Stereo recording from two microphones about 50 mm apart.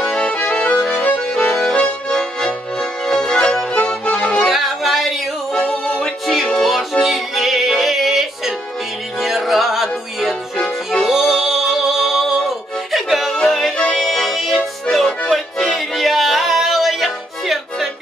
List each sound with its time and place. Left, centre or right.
0.0 s accordion: centre
0.3 s accordion: left
1.6 s accordion: centre
3.8 s music: left
4.5 s yodeling: centre
5.6 s music: left
6.0 s music: centre
11.1 s music: centre
13.3 s music: centre